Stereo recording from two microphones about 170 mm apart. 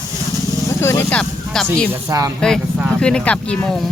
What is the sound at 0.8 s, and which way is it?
Speech, 15° left (ahead or behind).